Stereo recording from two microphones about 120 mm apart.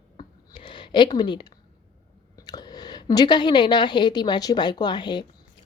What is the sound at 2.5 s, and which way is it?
A woman's voice, 35° left (ahead or behind).